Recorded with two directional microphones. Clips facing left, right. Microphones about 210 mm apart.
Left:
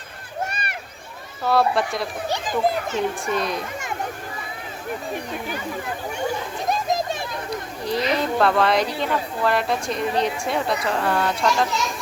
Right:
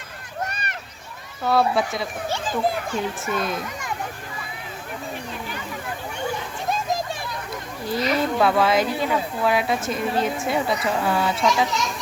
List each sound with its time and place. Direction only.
0.5 s run: 10° left (ahead or behind)
1.5 s speech: centre (ahead or behind)
2.3 s a child's voice: 20° left (ahead or behind)
3.2 s speech: centre (ahead or behind)
7.9 s speech: 5° right (ahead or behind)